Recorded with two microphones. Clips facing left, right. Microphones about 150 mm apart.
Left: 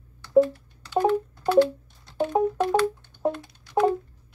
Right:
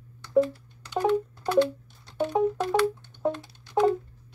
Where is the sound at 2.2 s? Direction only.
20° left (ahead or behind).